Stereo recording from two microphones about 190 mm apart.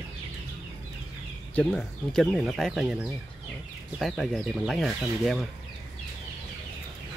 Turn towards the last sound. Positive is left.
turn(degrees=0)  # may be behind; listen again after turning